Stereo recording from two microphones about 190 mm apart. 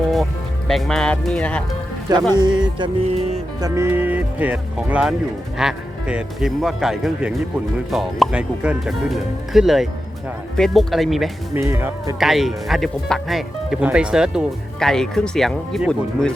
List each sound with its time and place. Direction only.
0.7 s speech: centre (ahead or behind)
2.4 s music: 25° right (ahead or behind)
3.6 s speech: 15° right (ahead or behind)
11.5 s speech: 10° right (ahead or behind)